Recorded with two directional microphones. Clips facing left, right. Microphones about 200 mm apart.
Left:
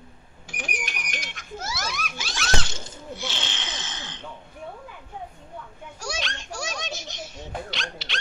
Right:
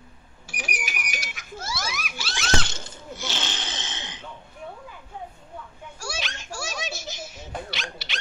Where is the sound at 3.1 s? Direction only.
40° right (ahead or behind).